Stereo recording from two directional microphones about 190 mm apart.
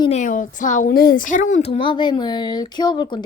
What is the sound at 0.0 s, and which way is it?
A woman's voice, 35° left (ahead or behind).